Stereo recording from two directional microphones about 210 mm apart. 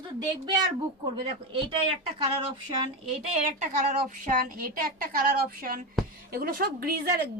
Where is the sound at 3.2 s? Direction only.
35° right (ahead or behind); by 7.2 s 50° right (ahead or behind).